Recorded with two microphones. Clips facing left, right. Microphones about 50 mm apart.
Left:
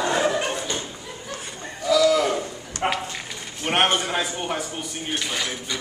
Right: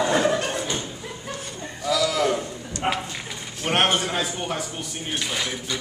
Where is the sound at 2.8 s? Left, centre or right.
Centre.